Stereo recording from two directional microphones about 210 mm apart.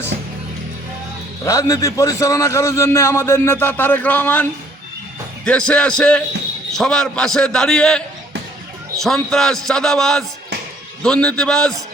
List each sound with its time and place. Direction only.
1.5 s a man's voice: 15° left (ahead or behind)
5.5 s a man's voice: 5° left (ahead or behind)